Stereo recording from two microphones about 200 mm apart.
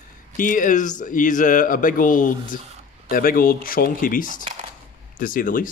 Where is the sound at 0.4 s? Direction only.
40° left (ahead or behind).